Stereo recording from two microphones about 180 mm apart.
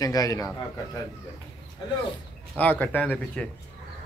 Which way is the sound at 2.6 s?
10° left (ahead or behind).